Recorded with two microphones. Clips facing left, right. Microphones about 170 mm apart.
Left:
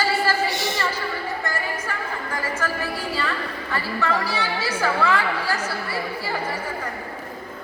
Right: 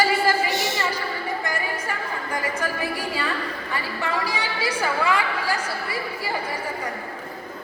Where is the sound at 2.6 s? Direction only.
15° right (ahead or behind).